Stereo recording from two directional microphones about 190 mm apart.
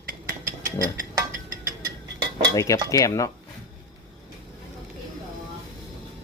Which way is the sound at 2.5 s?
15° left (ahead or behind).